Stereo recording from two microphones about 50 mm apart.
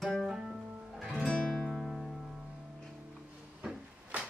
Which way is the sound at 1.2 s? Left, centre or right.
Centre.